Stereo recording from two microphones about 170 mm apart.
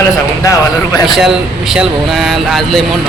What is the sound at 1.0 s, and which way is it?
Speech, centre (ahead or behind).